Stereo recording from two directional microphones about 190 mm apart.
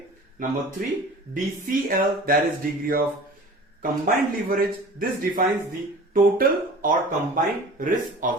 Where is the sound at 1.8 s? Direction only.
50° right (ahead or behind).